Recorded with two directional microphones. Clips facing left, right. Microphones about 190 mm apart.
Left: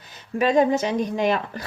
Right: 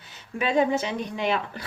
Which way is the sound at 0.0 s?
40° left (ahead or behind).